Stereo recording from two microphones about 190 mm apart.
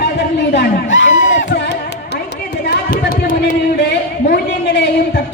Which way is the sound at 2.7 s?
50° left (ahead or behind).